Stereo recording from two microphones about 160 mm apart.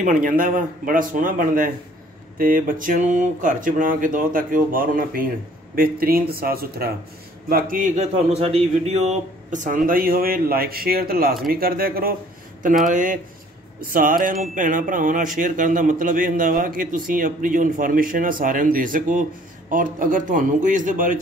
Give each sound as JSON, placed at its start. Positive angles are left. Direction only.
{"t": 0.0, "sound": "speech", "side_deg": -55}
{"t": 12.8, "sound": "speech", "side_deg": -55}